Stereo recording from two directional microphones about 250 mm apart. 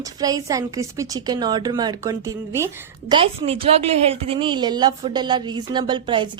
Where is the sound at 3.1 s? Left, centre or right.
Right.